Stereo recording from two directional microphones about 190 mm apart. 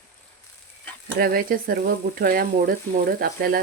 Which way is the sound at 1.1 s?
50° right (ahead or behind).